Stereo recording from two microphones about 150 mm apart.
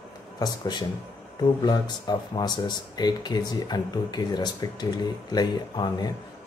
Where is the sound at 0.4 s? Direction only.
30° left (ahead or behind).